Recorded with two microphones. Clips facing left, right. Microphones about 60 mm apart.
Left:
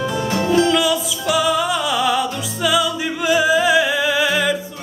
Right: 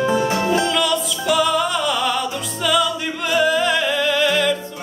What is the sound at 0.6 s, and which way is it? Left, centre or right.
Music, centre.